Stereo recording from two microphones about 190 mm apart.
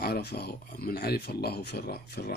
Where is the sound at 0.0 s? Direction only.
55° left (ahead or behind).